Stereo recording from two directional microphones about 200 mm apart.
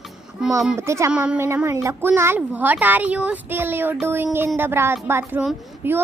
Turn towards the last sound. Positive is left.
turn(degrees=-10)  # may be behind; listen again after turning